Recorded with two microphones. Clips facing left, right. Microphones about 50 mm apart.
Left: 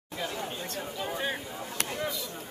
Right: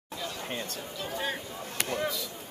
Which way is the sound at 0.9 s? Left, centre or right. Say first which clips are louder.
Even; centre.